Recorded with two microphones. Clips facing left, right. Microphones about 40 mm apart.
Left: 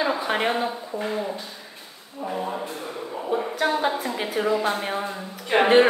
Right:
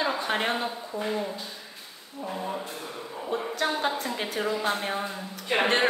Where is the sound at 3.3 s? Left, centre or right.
Centre.